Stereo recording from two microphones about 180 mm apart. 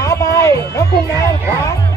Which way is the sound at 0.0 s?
20° left (ahead or behind).